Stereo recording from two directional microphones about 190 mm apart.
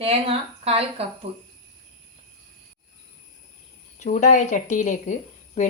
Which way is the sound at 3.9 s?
40° left (ahead or behind).